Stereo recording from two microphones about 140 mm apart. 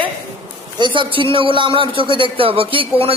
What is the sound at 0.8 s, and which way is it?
A man's voice, 35° right (ahead or behind).